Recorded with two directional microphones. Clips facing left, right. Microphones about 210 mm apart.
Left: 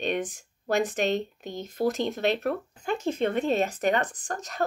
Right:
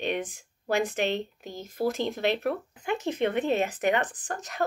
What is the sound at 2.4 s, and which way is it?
Speech, 20° right (ahead or behind).